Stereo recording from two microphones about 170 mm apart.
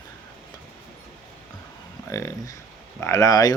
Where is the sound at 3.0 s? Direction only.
20° left (ahead or behind).